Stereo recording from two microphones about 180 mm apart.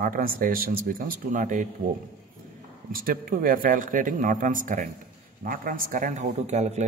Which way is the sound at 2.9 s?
55° right (ahead or behind).